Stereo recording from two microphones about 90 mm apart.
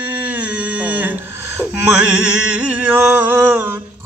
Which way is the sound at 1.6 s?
15° right (ahead or behind).